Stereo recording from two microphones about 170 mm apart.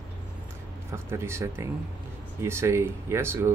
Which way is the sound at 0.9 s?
15° right (ahead or behind).